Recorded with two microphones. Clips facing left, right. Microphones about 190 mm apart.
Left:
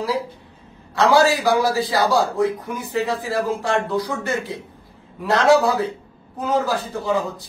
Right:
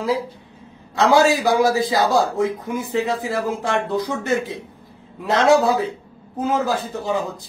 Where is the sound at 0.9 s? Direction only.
20° right (ahead or behind).